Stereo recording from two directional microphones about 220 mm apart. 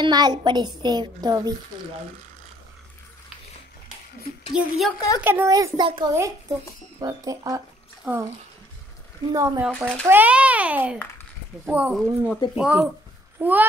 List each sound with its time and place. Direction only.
0.0 s a child's voice: 20° right (ahead or behind)
4.6 s a woman's voice: centre (ahead or behind)
9.3 s a child's voice: 10° right (ahead or behind)